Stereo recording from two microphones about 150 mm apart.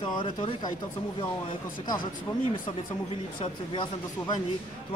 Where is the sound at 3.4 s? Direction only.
30° left (ahead or behind).